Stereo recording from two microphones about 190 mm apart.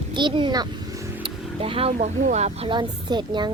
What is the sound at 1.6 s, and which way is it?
Speech, 30° right (ahead or behind).